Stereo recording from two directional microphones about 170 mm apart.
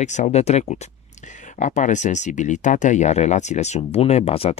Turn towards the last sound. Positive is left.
turn(degrees=35)  # may be behind; listen again after turning